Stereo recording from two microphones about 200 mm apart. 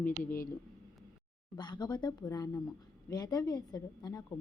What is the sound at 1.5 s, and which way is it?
Speech, 20° left (ahead or behind).